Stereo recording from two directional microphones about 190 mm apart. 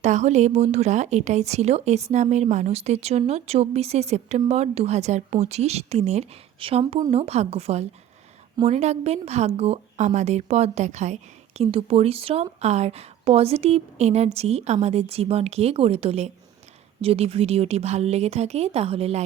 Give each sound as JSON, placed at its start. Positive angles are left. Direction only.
{"t": 0.0, "sound": "a woman's voice", "side_deg": -35}